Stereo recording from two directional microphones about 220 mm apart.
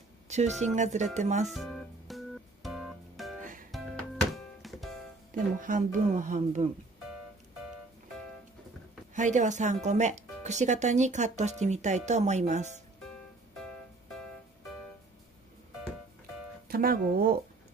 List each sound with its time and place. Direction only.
0.3 s a woman's voice: 30° right (ahead or behind)
1.5 s music: centre (ahead or behind)
5.3 s speech: 35° right (ahead or behind)
9.1 s speech: 35° right (ahead or behind)
16.6 s speech: 40° right (ahead or behind)